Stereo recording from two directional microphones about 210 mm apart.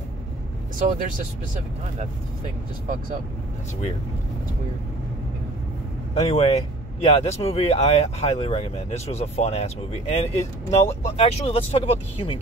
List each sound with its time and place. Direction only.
0.7 s speech: 40° right (ahead or behind)
6.1 s speech: 30° left (ahead or behind)